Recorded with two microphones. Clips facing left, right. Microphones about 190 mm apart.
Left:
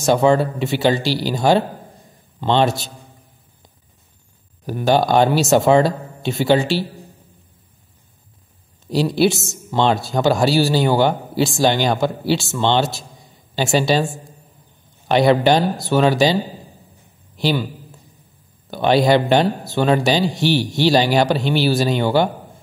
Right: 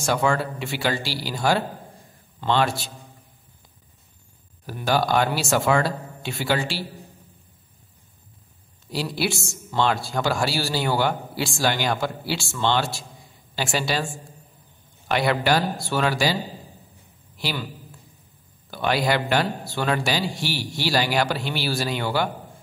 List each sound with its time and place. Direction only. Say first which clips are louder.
0.0 s speech: left 8 dB; 20° left (ahead or behind)
4.6 s speech: left 6 dB; 25° left (ahead or behind)
8.9 s speech: left 10 dB; 25° left (ahead or behind)
17.4 s a man's voice: left 10 dB; 25° left (ahead or behind)
18.7 s speech: left 8 dB; 25° left (ahead or behind)